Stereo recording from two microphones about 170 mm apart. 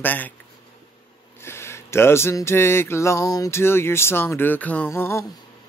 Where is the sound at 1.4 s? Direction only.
15° left (ahead or behind).